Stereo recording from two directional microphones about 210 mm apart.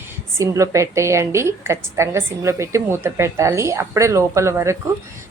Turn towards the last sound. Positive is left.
turn(degrees=-15)  # may be behind; listen again after turning